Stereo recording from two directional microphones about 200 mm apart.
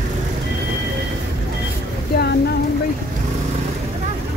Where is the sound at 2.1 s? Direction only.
50° left (ahead or behind).